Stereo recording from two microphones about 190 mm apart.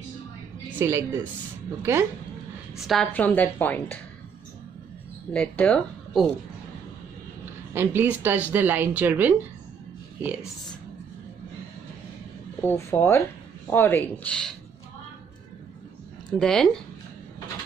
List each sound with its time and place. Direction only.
0.7 s music: 15° right (ahead or behind)
1.8 s speech: 15° right (ahead or behind)
2.8 s a woman's voice: centre (ahead or behind)
5.3 s speech: 5° left (ahead or behind)
7.7 s speech: 10° right (ahead or behind)
12.6 s a woman's voice: 10° left (ahead or behind)
16.3 s speech: 5° left (ahead or behind)